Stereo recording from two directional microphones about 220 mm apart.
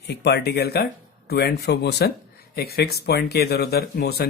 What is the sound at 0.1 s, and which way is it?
Speech, 50° left (ahead or behind).